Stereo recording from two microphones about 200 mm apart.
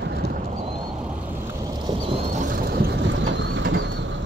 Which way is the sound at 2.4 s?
45° right (ahead or behind).